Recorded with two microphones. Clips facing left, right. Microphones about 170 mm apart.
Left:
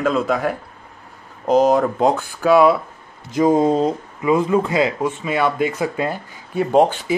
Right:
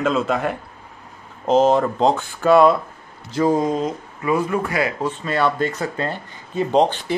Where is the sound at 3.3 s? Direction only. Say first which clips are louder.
Left 3 dB; 20° left (ahead or behind).